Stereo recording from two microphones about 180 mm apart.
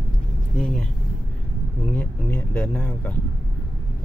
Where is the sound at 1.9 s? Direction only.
10° left (ahead or behind).